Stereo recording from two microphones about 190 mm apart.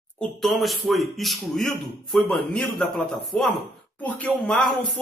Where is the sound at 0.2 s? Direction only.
Centre (ahead or behind).